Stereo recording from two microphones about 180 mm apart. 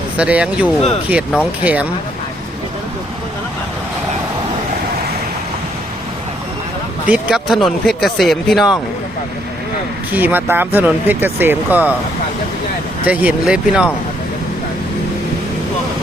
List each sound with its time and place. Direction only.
0.2 s speech: 5° right (ahead or behind)
7.1 s a man's voice: 5° right (ahead or behind)
10.1 s speech: 10° right (ahead or behind)
13.1 s speech: 5° right (ahead or behind)